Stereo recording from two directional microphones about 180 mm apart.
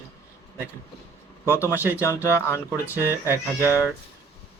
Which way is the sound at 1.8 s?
10° right (ahead or behind).